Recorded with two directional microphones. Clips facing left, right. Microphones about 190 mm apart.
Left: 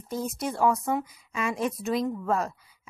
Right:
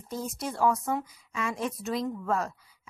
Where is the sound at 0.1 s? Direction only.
20° left (ahead or behind).